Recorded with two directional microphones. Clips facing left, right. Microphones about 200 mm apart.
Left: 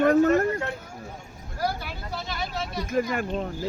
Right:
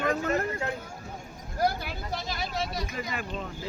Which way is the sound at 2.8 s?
50° left (ahead or behind).